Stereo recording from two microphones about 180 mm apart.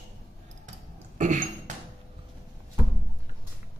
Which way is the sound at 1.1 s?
45° right (ahead or behind).